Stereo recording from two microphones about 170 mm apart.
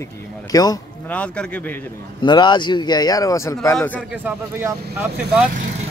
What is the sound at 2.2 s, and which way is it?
Speech, 25° left (ahead or behind).